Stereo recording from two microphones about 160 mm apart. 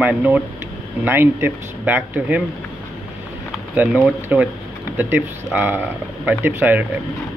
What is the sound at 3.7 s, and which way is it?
Speech, 10° right (ahead or behind).